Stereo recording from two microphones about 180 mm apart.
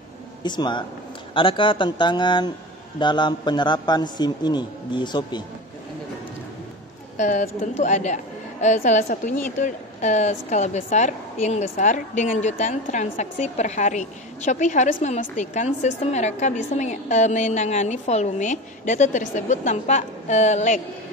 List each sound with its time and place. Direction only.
0.4 s a man's voice: 25° left (ahead or behind)
7.2 s a woman's voice: 45° left (ahead or behind)